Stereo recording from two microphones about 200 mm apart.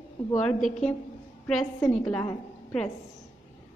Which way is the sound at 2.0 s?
5° left (ahead or behind).